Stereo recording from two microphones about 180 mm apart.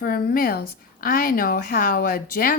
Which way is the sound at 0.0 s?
55° left (ahead or behind).